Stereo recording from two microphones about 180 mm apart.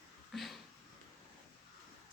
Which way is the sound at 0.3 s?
Centre (ahead or behind).